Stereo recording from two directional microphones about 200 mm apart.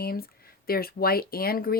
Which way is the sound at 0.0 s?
50° left (ahead or behind).